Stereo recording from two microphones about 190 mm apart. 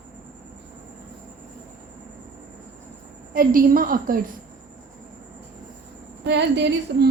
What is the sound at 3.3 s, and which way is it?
Speech, 50° right (ahead or behind).